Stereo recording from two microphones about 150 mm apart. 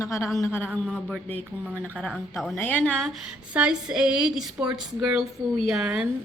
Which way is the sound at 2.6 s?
10° left (ahead or behind).